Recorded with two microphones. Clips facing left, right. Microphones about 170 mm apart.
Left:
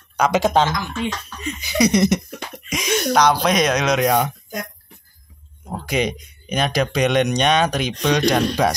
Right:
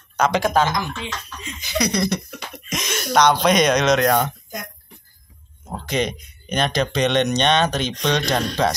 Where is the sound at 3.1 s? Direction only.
5° left (ahead or behind).